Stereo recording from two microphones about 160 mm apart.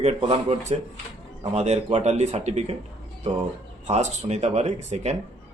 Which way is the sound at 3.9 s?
45° right (ahead or behind).